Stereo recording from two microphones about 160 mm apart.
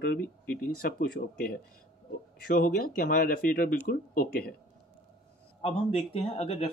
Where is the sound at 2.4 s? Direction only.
60° left (ahead or behind).